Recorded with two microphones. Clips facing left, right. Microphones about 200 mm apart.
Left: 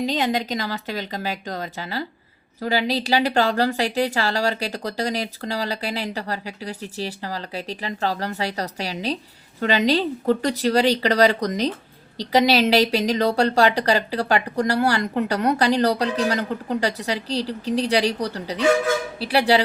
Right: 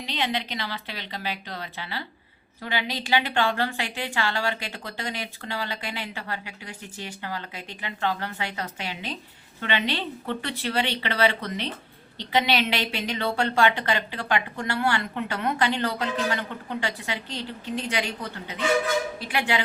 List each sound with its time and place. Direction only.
0.0 s a woman's voice: 40° left (ahead or behind)